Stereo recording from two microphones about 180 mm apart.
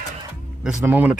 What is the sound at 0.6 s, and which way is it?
Speech, 5° right (ahead or behind).